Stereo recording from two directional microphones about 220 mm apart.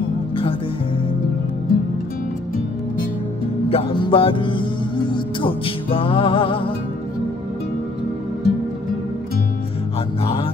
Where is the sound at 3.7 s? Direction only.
25° left (ahead or behind).